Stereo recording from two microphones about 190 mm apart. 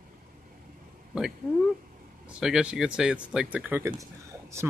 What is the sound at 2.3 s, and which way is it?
Speech, 5° right (ahead or behind).